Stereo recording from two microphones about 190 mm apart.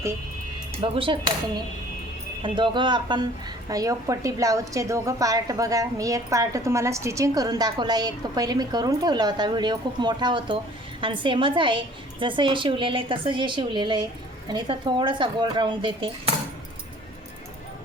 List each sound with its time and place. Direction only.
0.8 s a woman's voice: 25° right (ahead or behind)
2.4 s a woman's voice: 25° right (ahead or behind)